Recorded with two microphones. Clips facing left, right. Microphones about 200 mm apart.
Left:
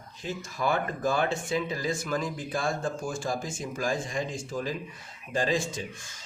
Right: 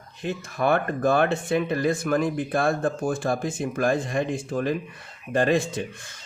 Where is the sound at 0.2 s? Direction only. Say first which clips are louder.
Right 6 dB; 60° right (ahead or behind).